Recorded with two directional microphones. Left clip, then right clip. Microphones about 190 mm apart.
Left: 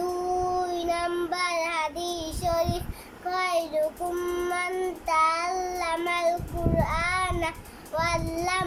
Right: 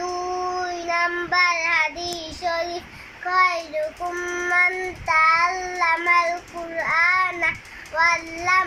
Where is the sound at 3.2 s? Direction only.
20° left (ahead or behind).